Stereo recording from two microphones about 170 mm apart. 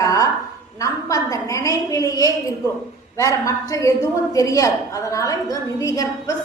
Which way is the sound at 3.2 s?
20° left (ahead or behind).